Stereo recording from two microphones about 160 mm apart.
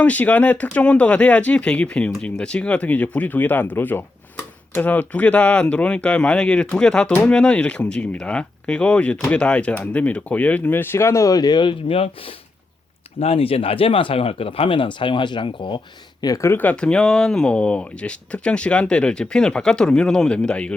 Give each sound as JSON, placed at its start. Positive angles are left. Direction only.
{"t": 0.0, "sound": "speech", "side_deg": 10}
{"t": 16.2, "sound": "speech", "side_deg": 20}